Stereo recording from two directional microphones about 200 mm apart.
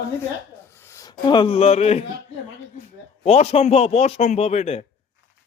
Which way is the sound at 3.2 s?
30° left (ahead or behind).